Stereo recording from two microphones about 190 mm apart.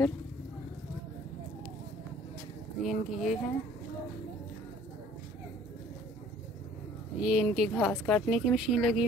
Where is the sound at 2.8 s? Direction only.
Centre (ahead or behind).